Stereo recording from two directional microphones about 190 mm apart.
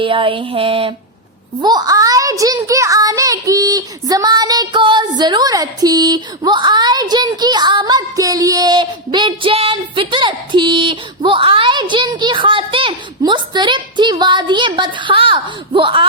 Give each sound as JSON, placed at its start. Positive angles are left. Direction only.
{"t": 0.0, "sound": "a child's voice", "side_deg": -25}